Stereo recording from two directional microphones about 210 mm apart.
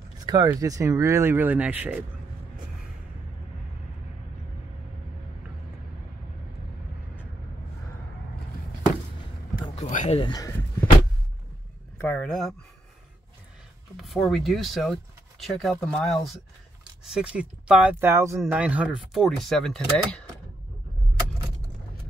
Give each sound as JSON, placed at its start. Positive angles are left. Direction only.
{"t": 0.3, "sound": "speech", "side_deg": -15}
{"t": 9.6, "sound": "a sound", "side_deg": 35}
{"t": 12.0, "sound": "speech", "side_deg": 5}
{"t": 13.9, "sound": "speech", "side_deg": 0}